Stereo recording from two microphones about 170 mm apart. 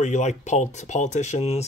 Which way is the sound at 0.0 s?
45° left (ahead or behind).